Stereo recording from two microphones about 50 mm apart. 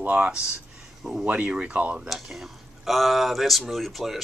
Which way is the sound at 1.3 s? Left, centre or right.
Right.